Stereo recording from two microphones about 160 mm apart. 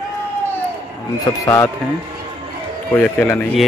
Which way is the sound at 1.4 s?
20° left (ahead or behind).